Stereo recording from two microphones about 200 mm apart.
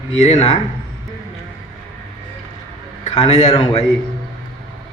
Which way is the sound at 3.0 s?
30° left (ahead or behind).